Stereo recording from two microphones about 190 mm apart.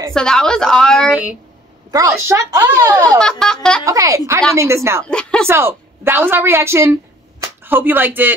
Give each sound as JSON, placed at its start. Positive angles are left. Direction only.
{"t": 0.1, "sound": "a woman's voice", "side_deg": 5}
{"t": 1.9, "sound": "speech", "side_deg": -15}
{"t": 3.2, "sound": "a woman's voice", "side_deg": 5}
{"t": 3.8, "sound": "speech", "side_deg": -15}
{"t": 5.0, "sound": "a woman's voice", "side_deg": 5}
{"t": 5.5, "sound": "a woman's voice", "side_deg": -10}